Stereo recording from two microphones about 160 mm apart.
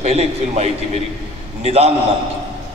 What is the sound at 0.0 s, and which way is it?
A man's voice, 40° right (ahead or behind).